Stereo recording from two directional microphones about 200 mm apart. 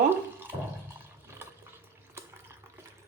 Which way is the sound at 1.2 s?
10° right (ahead or behind).